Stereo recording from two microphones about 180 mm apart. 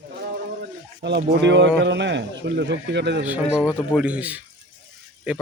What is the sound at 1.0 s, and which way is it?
A man's voice, 70° right (ahead or behind).